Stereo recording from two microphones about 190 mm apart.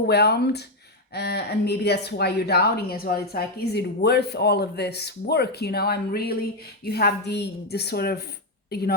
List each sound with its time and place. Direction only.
0.1 s speech: 60° left (ahead or behind)